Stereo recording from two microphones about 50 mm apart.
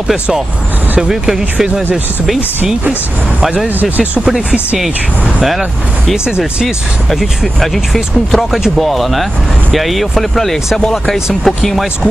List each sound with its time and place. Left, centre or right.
1.0 s speech: centre
3.3 s speech: centre
3.6 s speech: right
6.2 s speech: centre
7.1 s speech: centre